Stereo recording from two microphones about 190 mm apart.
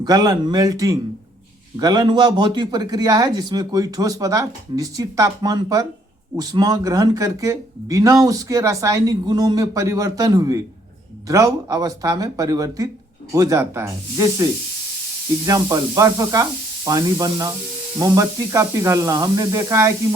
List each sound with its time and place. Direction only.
0.0 s speech: 20° right (ahead or behind)
15.4 s speech: 15° right (ahead or behind)